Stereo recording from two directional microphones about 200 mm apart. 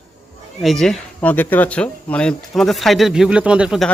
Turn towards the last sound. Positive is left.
turn(degrees=-5)  # may be behind; listen again after turning